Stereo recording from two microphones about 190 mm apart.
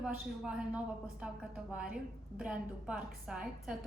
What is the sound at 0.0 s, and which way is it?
A woman's voice, 5° right (ahead or behind).